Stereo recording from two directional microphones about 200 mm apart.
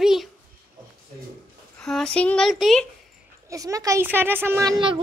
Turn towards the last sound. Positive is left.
turn(degrees=-20)  # may be behind; listen again after turning